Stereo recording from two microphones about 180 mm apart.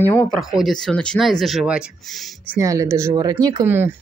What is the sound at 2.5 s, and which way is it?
Speech, 15° right (ahead or behind).